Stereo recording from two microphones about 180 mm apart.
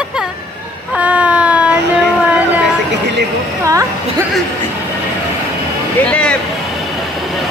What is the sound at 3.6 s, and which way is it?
Speech, 15° right (ahead or behind).